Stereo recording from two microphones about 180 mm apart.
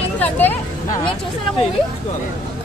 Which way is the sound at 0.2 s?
10° left (ahead or behind).